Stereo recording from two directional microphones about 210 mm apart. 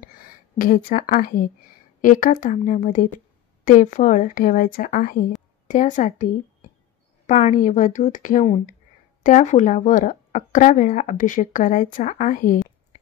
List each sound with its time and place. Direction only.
0.6 s speech: 40° left (ahead or behind)